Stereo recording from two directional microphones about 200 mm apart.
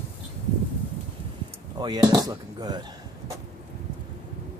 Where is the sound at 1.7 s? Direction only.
20° right (ahead or behind).